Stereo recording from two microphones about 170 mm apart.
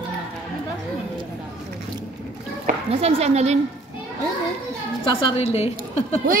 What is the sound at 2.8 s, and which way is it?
Speech, 35° right (ahead or behind).